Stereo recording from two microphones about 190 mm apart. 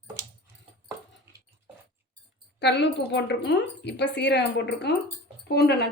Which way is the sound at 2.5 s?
65° left (ahead or behind).